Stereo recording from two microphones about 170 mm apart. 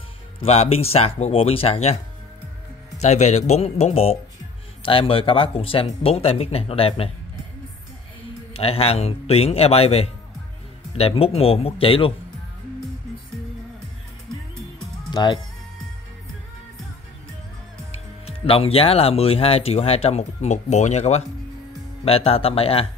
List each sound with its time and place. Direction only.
0.4 s speech: 35° left (ahead or behind)
3.0 s speech: 40° left (ahead or behind)
8.5 s speech: 35° left (ahead or behind)
15.0 s speech: 25° left (ahead or behind)
17.9 s speech: 35° left (ahead or behind)